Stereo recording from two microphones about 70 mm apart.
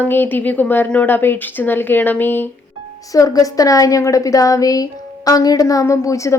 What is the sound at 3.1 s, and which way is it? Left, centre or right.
A woman's voice, left.